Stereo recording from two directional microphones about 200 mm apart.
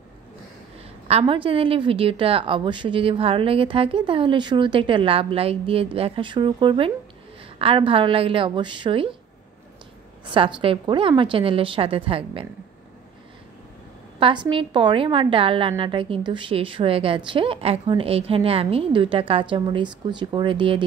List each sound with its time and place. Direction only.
1.0 s a woman's voice: 30° right (ahead or behind)
10.2 s a woman's voice: 25° right (ahead or behind)
14.2 s a woman's voice: 25° right (ahead or behind)